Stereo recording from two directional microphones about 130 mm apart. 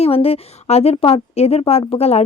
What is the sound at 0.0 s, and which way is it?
Speech, 50° left (ahead or behind).